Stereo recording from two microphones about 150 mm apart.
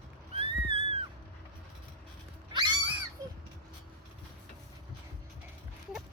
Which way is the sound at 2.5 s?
30° right (ahead or behind).